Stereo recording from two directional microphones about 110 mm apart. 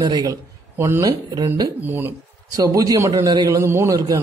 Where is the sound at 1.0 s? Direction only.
35° right (ahead or behind).